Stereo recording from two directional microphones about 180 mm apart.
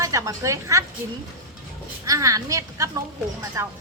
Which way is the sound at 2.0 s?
20° right (ahead or behind).